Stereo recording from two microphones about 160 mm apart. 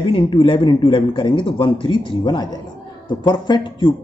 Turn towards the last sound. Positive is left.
turn(degrees=30)  # may be behind; listen again after turning